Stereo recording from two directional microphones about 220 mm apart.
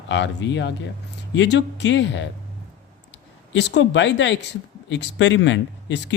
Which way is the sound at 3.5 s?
50° left (ahead or behind).